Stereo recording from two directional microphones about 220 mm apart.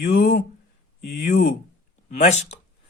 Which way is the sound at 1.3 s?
35° left (ahead or behind).